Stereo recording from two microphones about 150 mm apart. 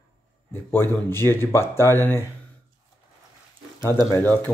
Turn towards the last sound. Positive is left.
turn(degrees=15)  # may be behind; listen again after turning